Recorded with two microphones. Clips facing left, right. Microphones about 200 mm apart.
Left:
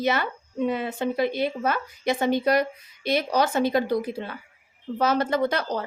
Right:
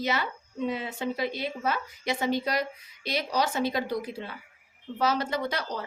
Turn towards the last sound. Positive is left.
turn(degrees=55)  # may be behind; listen again after turning